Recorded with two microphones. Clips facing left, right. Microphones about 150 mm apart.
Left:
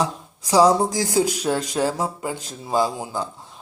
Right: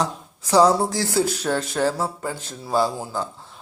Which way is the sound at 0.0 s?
10° left (ahead or behind).